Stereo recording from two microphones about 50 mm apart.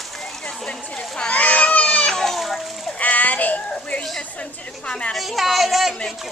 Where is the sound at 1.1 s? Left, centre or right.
Left.